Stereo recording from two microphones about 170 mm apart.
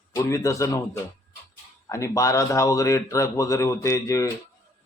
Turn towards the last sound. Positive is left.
turn(degrees=20)  # may be behind; listen again after turning